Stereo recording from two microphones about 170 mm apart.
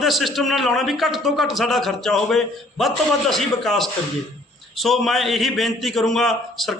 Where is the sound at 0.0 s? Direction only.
Centre (ahead or behind).